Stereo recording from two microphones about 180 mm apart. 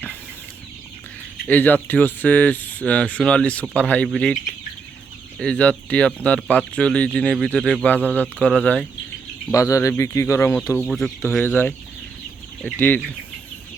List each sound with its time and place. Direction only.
1.5 s speech: 10° left (ahead or behind)
5.4 s speech: 5° left (ahead or behind)
9.5 s speech: 15° left (ahead or behind)
10.8 s speech: centre (ahead or behind)
11.3 s speech: 10° left (ahead or behind)